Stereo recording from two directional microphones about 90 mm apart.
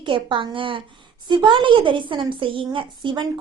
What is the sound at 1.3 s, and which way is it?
A woman's voice, 60° right (ahead or behind).